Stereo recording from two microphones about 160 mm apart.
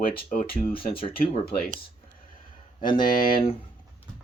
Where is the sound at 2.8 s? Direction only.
30° left (ahead or behind).